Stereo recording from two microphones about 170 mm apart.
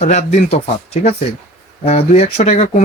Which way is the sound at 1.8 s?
35° left (ahead or behind).